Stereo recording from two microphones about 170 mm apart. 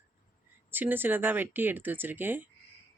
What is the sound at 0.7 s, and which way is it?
A woman's voice, 10° right (ahead or behind).